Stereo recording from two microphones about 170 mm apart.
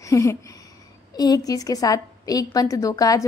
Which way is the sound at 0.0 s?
20° left (ahead or behind).